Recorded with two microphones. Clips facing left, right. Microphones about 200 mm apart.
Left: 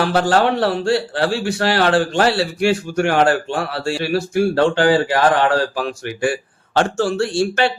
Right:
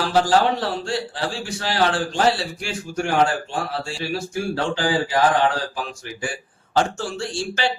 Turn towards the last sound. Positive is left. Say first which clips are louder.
# left 7 dB
turn(degrees=60)  # may be behind; listen again after turning